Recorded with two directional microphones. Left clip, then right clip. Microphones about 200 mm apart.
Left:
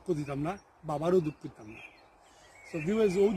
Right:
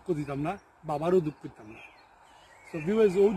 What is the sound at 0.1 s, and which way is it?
Speech, centre (ahead or behind).